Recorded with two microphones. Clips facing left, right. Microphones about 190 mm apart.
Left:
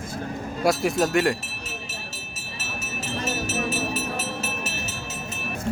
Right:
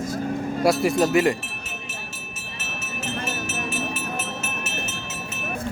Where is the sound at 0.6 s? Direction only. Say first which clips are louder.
Right 2 dB; centre (ahead or behind).